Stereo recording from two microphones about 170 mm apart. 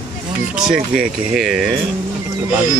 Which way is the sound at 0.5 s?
5° right (ahead or behind).